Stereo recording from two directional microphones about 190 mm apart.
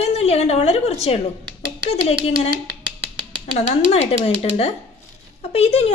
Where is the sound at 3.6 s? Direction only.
35° left (ahead or behind).